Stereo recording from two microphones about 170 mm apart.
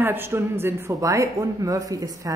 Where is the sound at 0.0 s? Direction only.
15° right (ahead or behind).